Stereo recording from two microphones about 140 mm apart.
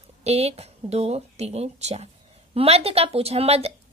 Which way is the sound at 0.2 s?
50° right (ahead or behind).